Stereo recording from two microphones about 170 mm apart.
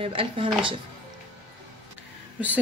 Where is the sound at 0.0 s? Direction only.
30° right (ahead or behind).